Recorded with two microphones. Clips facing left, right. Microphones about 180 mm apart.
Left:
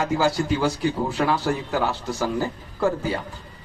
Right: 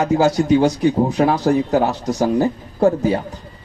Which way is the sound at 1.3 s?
20° right (ahead or behind).